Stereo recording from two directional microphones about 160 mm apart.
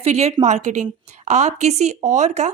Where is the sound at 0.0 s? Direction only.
40° right (ahead or behind).